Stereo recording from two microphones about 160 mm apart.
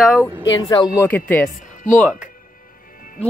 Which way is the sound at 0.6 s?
25° left (ahead or behind).